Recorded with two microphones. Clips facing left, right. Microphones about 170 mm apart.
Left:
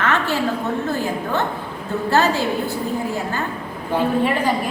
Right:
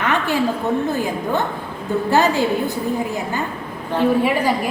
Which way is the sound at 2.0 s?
15° right (ahead or behind).